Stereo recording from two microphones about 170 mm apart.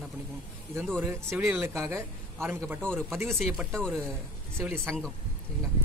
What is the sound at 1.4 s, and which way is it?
Speech, 10° right (ahead or behind).